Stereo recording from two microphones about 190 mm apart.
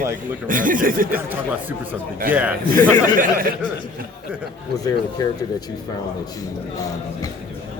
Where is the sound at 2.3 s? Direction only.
10° right (ahead or behind).